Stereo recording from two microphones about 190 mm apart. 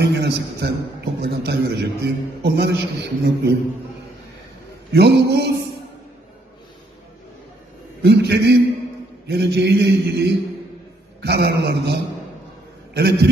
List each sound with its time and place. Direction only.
0.0 s a man's voice: 60° right (ahead or behind)
4.9 s a man's voice: 60° right (ahead or behind)
8.0 s a man's voice: 60° right (ahead or behind)